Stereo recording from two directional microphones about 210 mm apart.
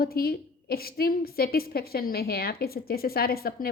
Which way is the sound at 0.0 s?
45° left (ahead or behind).